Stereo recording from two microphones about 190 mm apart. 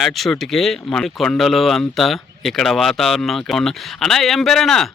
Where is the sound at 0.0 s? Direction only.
Centre (ahead or behind).